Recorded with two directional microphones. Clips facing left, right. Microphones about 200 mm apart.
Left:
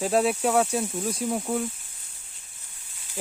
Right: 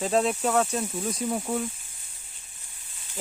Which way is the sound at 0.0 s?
5° left (ahead or behind).